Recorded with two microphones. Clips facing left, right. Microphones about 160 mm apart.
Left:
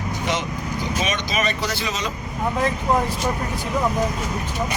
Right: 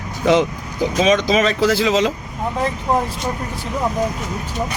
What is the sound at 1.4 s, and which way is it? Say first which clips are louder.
Speech: right 8 dB; 90° right.